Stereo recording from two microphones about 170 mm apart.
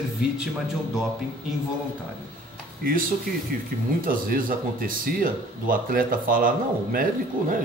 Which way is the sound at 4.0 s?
55° right (ahead or behind).